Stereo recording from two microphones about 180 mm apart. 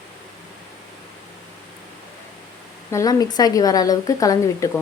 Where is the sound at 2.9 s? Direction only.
20° left (ahead or behind).